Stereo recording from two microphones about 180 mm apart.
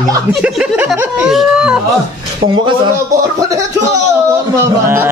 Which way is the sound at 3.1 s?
20° right (ahead or behind).